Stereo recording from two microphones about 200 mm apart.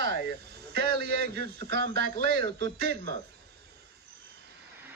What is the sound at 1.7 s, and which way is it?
Speech, 60° right (ahead or behind).